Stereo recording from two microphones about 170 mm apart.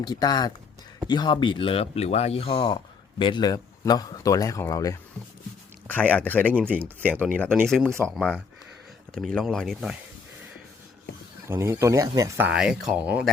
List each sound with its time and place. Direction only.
0.0 s a man's voice: 25° left (ahead or behind)
5.9 s speech: 10° left (ahead or behind)
11.4 s speech: 15° right (ahead or behind)
12.5 s speech: 5° right (ahead or behind)